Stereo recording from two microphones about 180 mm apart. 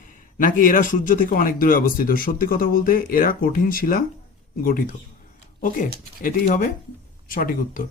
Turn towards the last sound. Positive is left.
turn(degrees=50)  # may be behind; listen again after turning